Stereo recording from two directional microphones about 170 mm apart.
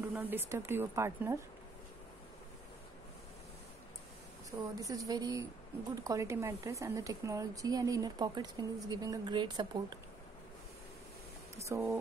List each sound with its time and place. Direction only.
0.0 s speech: 10° right (ahead or behind)
4.7 s speech: 20° right (ahead or behind)
11.7 s speech: 15° right (ahead or behind)